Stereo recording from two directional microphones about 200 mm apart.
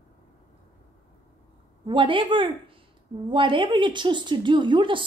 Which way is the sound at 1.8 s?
25° right (ahead or behind).